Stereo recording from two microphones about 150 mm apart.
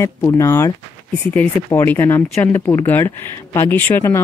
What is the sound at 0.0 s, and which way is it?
Speech, 20° left (ahead or behind).